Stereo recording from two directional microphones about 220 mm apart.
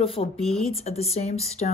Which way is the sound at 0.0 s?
25° left (ahead or behind).